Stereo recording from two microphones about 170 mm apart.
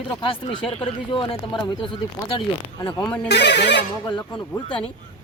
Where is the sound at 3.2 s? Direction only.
85° left.